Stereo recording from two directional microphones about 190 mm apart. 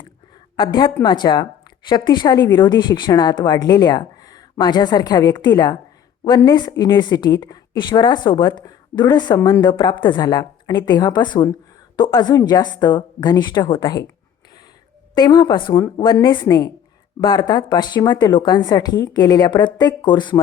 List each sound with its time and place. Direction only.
0.6 s a woman's voice: 25° left (ahead or behind)
15.1 s a woman's voice: 20° left (ahead or behind)